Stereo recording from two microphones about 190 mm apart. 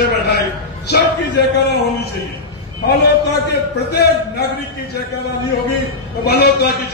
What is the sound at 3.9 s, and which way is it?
Speech, 60° left (ahead or behind).